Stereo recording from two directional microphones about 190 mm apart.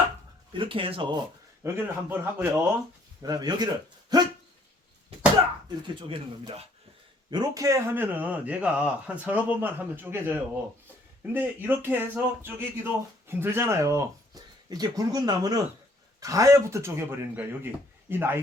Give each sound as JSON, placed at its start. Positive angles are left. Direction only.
{"t": 0.5, "sound": "speech", "side_deg": -25}
{"t": 1.6, "sound": "speech", "side_deg": -10}
{"t": 4.1, "sound": "dog", "side_deg": -20}
{"t": 5.6, "sound": "speech", "side_deg": -25}
{"t": 7.3, "sound": "speech", "side_deg": -20}